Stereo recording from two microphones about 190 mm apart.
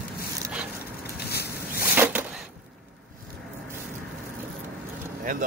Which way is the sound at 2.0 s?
10° right (ahead or behind).